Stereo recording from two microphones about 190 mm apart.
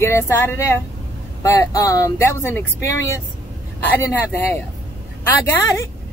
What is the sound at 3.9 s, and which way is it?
Speech, 10° left (ahead or behind).